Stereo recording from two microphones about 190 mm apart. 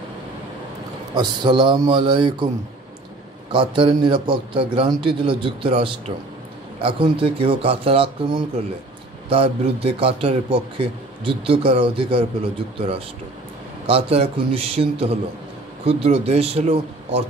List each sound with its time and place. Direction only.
1.1 s a man's voice: 25° right (ahead or behind)
3.5 s a man's voice: 25° right (ahead or behind)
13.8 s speech: 30° right (ahead or behind)